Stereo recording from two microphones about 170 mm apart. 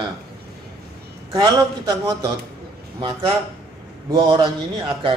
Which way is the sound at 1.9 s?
25° right (ahead or behind).